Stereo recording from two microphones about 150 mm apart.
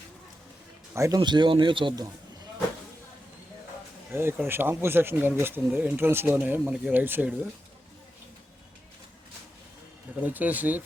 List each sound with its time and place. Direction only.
0.9 s speech: 20° right (ahead or behind)
4.1 s speech: 15° right (ahead or behind)
10.2 s speech: 10° right (ahead or behind)